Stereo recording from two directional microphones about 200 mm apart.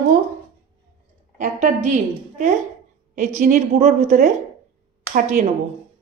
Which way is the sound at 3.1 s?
35° right (ahead or behind).